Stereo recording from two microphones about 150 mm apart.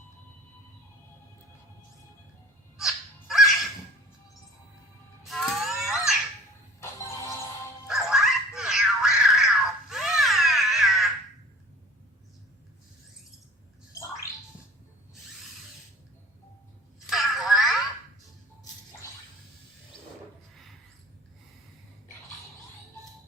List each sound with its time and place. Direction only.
2.7 s music: centre (ahead or behind)
5.3 s wail: centre (ahead or behind)
6.7 s music: 20° left (ahead or behind)
7.9 s a sound: 5° right (ahead or behind)
17.1 s telephone: centre (ahead or behind)